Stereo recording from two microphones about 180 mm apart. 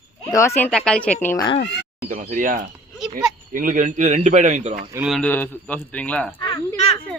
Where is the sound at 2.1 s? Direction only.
45° right (ahead or behind).